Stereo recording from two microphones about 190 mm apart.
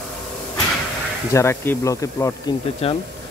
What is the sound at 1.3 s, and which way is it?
Speech, 15° left (ahead or behind).